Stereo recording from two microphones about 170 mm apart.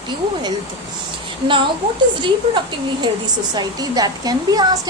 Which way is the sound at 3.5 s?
25° right (ahead or behind).